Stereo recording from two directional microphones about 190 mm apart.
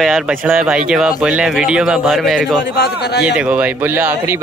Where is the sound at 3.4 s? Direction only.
5° right (ahead or behind).